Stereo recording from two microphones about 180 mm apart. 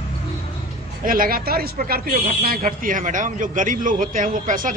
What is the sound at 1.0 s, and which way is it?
A woman's voice, 55° right (ahead or behind).